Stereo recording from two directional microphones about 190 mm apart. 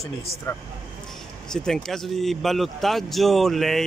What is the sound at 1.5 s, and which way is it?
Speech, 5° left (ahead or behind).